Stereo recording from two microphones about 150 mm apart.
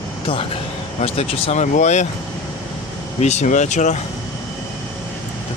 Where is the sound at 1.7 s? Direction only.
50° left (ahead or behind).